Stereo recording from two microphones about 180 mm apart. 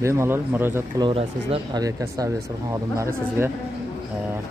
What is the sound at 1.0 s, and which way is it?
Speech, 30° right (ahead or behind).